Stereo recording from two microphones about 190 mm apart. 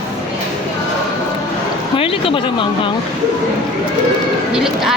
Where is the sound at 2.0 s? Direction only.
30° left (ahead or behind).